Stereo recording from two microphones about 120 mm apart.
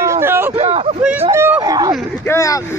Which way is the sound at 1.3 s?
20° right (ahead or behind).